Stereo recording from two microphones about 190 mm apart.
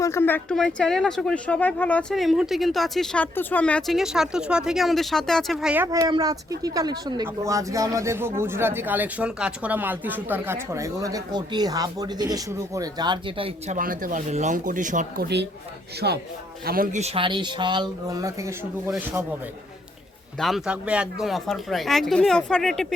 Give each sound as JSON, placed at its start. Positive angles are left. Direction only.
{"t": 0.0, "sound": "speech", "side_deg": 15}
{"t": 13.7, "sound": "speech", "side_deg": -45}
{"t": 17.2, "sound": "speech", "side_deg": -25}
{"t": 20.4, "sound": "speech", "side_deg": -5}